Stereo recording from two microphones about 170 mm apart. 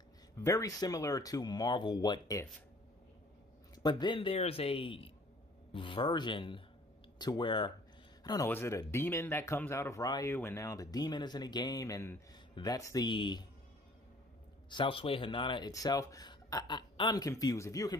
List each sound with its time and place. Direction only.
0.4 s speech: 20° left (ahead or behind)
3.8 s a man's voice: 25° left (ahead or behind)
14.7 s speech: 30° left (ahead or behind)